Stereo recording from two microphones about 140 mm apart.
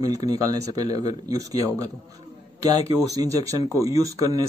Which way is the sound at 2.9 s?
25° right (ahead or behind).